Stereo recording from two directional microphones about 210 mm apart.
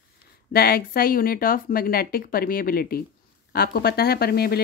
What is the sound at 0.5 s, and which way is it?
Speech, 45° left (ahead or behind).